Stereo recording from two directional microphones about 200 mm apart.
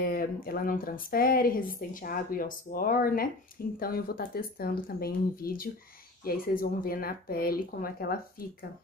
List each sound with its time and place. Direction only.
0.0 s speech: 45° left (ahead or behind)